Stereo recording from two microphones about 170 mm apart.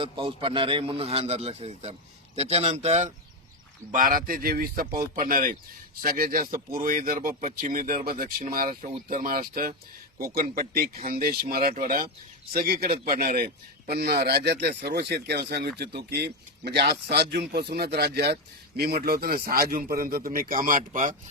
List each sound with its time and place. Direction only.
0.0 s a man's voice: 30° right (ahead or behind)
3.9 s speech: 55° right (ahead or behind)
12.5 s speech: 65° right (ahead or behind)